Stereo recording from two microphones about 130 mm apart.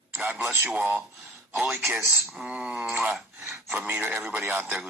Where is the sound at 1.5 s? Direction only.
Centre (ahead or behind).